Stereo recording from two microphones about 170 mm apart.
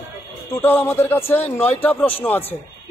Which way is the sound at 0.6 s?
10° left (ahead or behind).